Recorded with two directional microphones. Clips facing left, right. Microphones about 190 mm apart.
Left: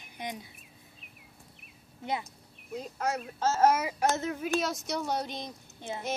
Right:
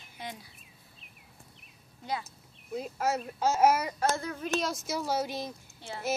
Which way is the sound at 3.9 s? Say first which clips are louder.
Left 2 dB; 20° left (ahead or behind).